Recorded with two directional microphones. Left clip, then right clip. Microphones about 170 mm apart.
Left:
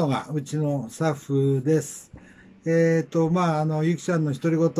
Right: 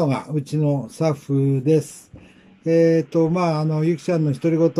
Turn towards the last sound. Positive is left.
turn(degrees=-5)  # may be behind; listen again after turning